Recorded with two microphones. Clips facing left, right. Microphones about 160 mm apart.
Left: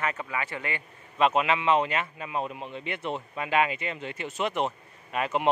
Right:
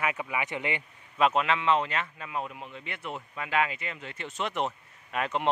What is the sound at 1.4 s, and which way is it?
A man's voice, 15° left (ahead or behind).